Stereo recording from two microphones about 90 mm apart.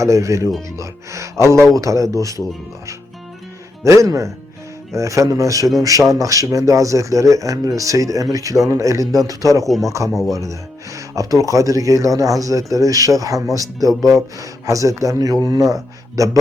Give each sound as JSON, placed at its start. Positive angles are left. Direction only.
{"t": 0.0, "sound": "speech", "side_deg": -35}
{"t": 3.8, "sound": "speech", "side_deg": -35}
{"t": 9.6, "sound": "speech", "side_deg": 0}
{"t": 10.3, "sound": "speech", "side_deg": -35}